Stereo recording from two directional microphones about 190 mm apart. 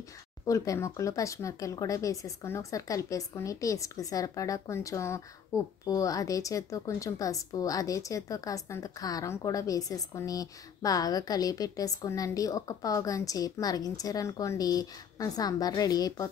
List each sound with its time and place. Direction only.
0.5 s speech: 15° left (ahead or behind)